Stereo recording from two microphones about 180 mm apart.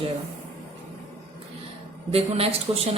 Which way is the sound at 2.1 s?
35° right (ahead or behind).